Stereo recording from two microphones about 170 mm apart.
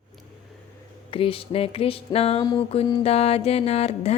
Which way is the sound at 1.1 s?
30° left (ahead or behind).